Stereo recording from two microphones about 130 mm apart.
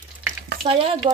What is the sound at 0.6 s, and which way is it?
Speech, 50° right (ahead or behind).